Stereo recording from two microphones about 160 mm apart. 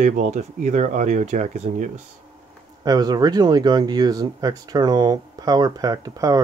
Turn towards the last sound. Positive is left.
turn(degrees=-20)  # may be behind; listen again after turning